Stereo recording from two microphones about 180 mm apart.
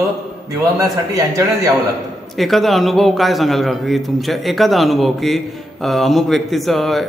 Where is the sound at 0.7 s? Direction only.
20° right (ahead or behind).